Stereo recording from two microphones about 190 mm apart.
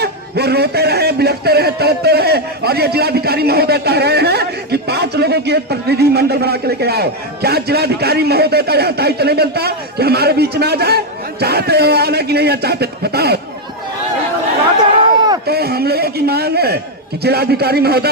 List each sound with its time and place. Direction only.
0.0 s a man's voice: 60° right (ahead or behind)
14.9 s a sound: 20° right (ahead or behind)
15.4 s chopping: 55° right (ahead or behind)
17.2 s a man's voice: 55° right (ahead or behind)